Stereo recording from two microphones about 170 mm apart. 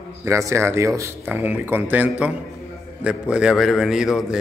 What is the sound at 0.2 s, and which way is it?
A man's voice, 15° right (ahead or behind).